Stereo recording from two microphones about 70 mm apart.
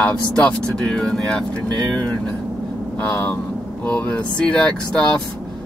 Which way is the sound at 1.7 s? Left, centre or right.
Right.